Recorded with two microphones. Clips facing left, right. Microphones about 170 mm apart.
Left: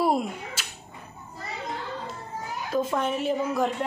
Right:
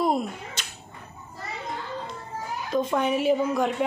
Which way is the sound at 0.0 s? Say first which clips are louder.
Even; 10° left (ahead or behind).